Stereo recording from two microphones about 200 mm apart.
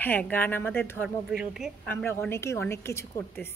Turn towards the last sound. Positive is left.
turn(degrees=10)  # may be behind; listen again after turning